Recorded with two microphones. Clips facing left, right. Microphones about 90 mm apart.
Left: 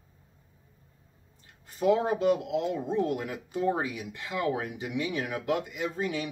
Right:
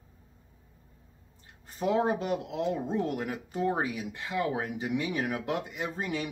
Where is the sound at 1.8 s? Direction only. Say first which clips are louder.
Left 2 dB; 35° right (ahead or behind).